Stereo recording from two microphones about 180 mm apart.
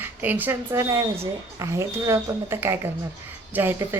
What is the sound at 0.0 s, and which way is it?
Speech, 10° right (ahead or behind).